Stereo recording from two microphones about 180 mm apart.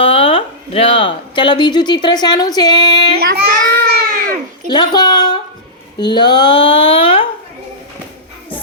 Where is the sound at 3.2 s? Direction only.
55° right (ahead or behind).